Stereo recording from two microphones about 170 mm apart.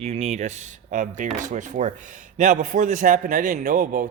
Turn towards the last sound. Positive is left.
turn(degrees=-50)  # may be behind; listen again after turning